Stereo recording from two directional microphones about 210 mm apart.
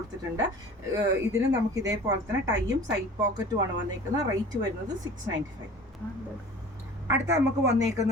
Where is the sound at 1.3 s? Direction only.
15° right (ahead or behind).